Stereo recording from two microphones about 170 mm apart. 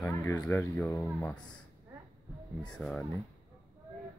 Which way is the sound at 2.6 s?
5° left (ahead or behind).